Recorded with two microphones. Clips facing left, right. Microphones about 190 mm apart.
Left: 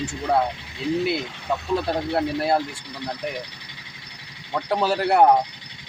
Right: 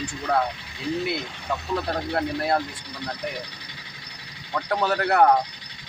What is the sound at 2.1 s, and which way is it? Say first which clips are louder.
Speech: left 2 dB; 25° left (ahead or behind).